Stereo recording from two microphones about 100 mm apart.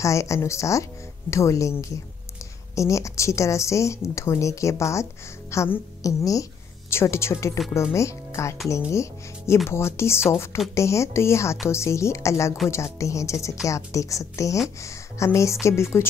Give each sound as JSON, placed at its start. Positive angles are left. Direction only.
{"t": 0.0, "sound": "a woman's voice", "side_deg": 30}